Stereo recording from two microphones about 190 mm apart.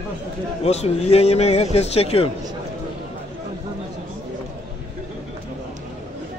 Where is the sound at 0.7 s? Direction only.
35° left (ahead or behind).